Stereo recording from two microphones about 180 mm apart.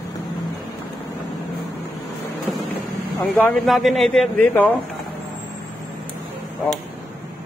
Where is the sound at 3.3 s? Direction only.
5° left (ahead or behind).